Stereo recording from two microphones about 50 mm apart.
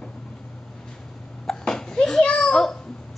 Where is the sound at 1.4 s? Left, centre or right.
Centre.